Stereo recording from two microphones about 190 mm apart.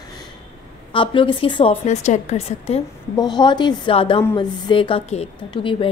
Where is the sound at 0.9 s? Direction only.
25° left (ahead or behind).